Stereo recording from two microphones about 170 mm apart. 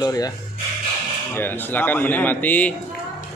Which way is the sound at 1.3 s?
10° left (ahead or behind).